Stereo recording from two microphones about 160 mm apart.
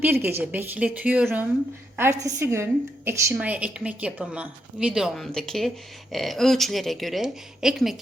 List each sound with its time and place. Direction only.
0.0 s a woman's voice: 15° right (ahead or behind)